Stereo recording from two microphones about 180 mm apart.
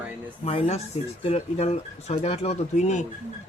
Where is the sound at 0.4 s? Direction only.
35° left (ahead or behind).